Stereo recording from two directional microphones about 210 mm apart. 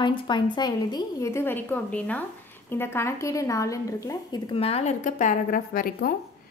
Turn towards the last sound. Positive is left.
turn(degrees=45)  # may be behind; listen again after turning